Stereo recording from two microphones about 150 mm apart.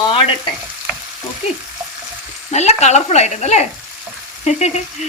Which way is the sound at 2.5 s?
50° left (ahead or behind).